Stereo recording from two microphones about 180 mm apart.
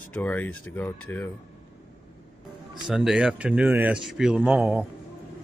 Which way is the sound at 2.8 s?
5° right (ahead or behind).